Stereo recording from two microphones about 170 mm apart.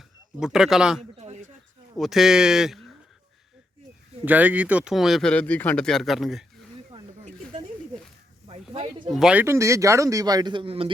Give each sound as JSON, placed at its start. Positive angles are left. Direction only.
{"t": 0.3, "sound": "speech", "side_deg": -5}
{"t": 1.2, "sound": "a sound", "side_deg": -40}
{"t": 2.0, "sound": "speech", "side_deg": 0}
{"t": 4.3, "sound": "speech", "side_deg": -10}
{"t": 8.7, "sound": "a sound", "side_deg": -35}
{"t": 9.0, "sound": "speech", "side_deg": 0}